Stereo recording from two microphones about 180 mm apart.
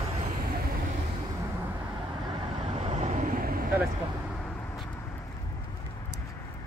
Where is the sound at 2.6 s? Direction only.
35° right (ahead or behind); by 3.6 s 50° right (ahead or behind).